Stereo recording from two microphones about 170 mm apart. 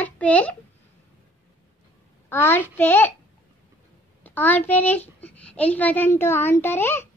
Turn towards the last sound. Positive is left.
turn(degrees=15)  # may be behind; listen again after turning